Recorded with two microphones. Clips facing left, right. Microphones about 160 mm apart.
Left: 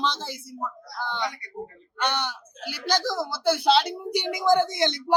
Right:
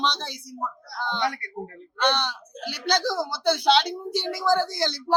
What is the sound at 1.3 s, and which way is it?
Speech, 55° right (ahead or behind).